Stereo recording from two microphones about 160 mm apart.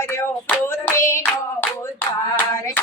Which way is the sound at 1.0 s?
15° left (ahead or behind).